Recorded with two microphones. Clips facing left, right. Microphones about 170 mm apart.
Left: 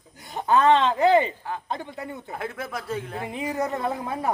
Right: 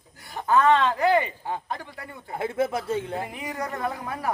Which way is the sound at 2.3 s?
25° right (ahead or behind).